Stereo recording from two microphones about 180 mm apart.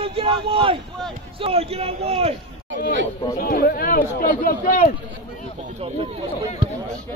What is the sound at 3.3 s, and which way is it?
Speech, 55° left (ahead or behind).